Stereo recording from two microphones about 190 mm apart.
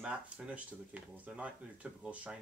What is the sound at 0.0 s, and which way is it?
Speech, 5° right (ahead or behind).